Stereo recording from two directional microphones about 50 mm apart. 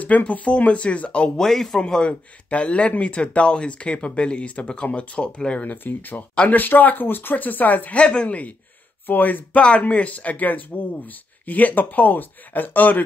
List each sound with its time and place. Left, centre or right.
0.0 s speech: left
1.4 s speech: centre
1.8 s speech: centre
5.6 s speech: left
8.0 s speech: left
9.6 s speech: left